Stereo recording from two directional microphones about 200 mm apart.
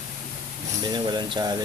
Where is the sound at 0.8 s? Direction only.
20° right (ahead or behind).